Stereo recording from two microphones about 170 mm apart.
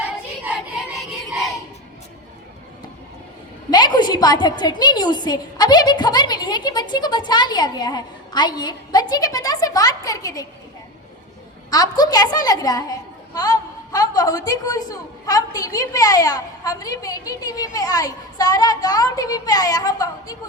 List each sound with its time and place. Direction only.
3.7 s a woman's voice: 25° left (ahead or behind)
11.7 s a woman's voice: 20° left (ahead or behind)